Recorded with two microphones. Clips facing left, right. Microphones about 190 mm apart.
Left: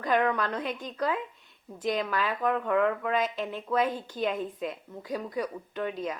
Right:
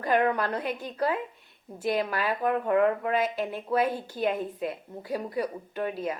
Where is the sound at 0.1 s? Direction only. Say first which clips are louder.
Right 1 dB; 45° right (ahead or behind).